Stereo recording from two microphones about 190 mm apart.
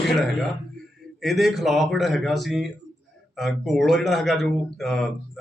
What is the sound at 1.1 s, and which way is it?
Speech, centre (ahead or behind).